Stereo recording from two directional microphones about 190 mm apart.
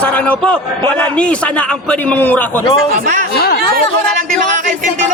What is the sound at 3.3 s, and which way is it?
Speech, 55° left (ahead or behind).